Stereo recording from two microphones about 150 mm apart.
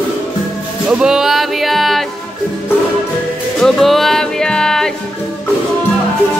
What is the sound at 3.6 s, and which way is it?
Music, centre (ahead or behind).